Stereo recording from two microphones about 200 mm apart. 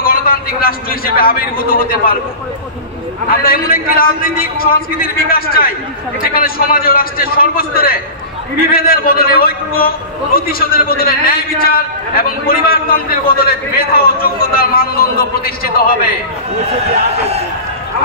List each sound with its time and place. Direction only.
0.0 s a man's voice: 45° left (ahead or behind)
3.3 s a man's voice: 45° left (ahead or behind)